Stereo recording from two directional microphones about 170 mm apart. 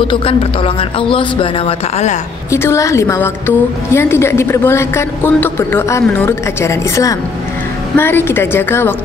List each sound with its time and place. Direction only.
0.1 s speech: 35° left (ahead or behind)
2.5 s a woman's voice: 15° left (ahead or behind)